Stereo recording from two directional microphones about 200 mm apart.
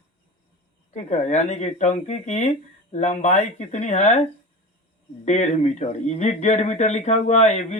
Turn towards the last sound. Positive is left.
turn(degrees=35)  # may be behind; listen again after turning